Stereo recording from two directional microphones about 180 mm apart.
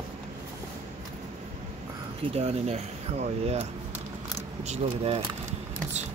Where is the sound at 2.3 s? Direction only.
35° right (ahead or behind).